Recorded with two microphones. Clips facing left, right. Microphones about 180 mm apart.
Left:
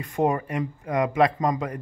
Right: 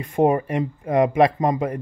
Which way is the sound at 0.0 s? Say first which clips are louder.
Right 5 dB; 25° right (ahead or behind).